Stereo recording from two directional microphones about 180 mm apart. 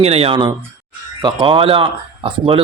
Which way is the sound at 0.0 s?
35° right (ahead or behind).